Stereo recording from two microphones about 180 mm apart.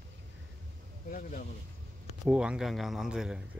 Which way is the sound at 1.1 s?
50° left (ahead or behind).